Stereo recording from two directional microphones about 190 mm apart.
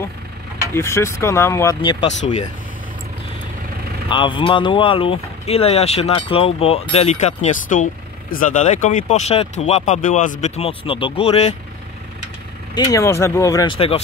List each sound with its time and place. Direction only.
0.7 s speech: 15° left (ahead or behind)
2.0 s speech: 35° left (ahead or behind)
4.1 s speech: 25° left (ahead or behind)
12.7 s speech: 20° left (ahead or behind)